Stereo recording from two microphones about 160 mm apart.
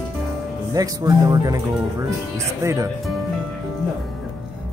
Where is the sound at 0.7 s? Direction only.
20° right (ahead or behind).